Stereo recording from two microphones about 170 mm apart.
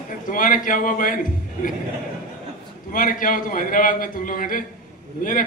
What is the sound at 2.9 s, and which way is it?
A man's voice, 55° left (ahead or behind).